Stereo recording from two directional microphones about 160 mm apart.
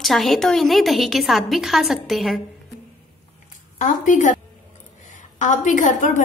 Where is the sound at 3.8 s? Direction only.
50° left (ahead or behind).